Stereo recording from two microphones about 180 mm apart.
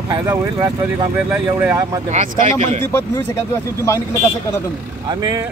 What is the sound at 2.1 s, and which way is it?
Speech, 45° right (ahead or behind).